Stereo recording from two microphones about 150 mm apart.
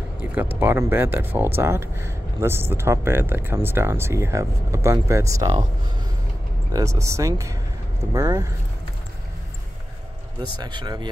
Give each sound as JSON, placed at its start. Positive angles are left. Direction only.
{"t": 0.2, "sound": "speech", "side_deg": -10}
{"t": 6.7, "sound": "speech", "side_deg": -20}
{"t": 10.6, "sound": "speech", "side_deg": -30}